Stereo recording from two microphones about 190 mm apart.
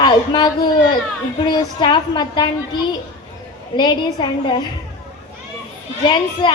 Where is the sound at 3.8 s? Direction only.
25° left (ahead or behind).